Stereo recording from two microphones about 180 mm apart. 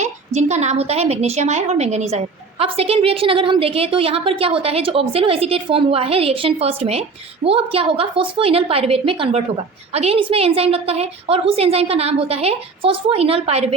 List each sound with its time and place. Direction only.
0.3 s a woman's voice: 40° right (ahead or behind)